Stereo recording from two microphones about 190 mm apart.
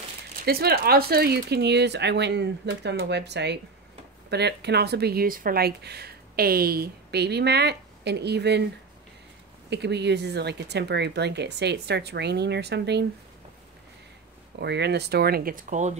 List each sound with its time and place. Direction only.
0.5 s speech: 55° right (ahead or behind)
9.7 s speech: 65° right (ahead or behind)
14.6 s speech: 60° right (ahead or behind); by 15.9 s 45° right (ahead or behind)